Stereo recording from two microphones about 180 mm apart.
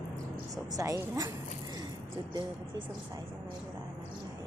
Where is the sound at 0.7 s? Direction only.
20° right (ahead or behind).